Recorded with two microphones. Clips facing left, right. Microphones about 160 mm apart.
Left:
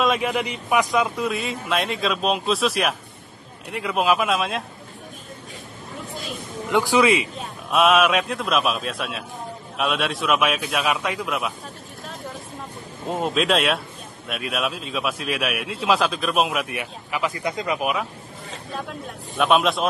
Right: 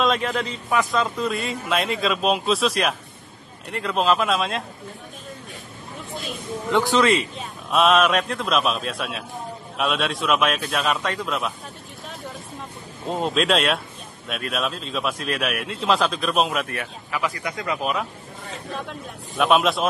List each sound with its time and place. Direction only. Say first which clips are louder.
0.0 s a man's voice: left 1 dB; 10° left (ahead or behind)
6.7 s a man's voice: left 1 dB; 10° left (ahead or behind)
13.1 s a man's voice: even; centre (ahead or behind)
16.6 s speech: even; 15° left (ahead or behind)
19.3 s a man's voice: even; centre (ahead or behind)